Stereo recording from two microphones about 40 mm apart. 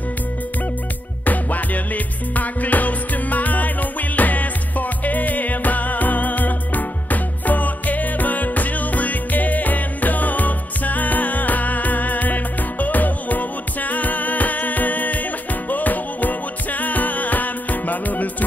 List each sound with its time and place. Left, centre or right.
1.2 s music: left